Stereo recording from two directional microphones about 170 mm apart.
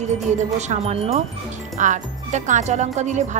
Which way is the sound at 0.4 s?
40° right (ahead or behind).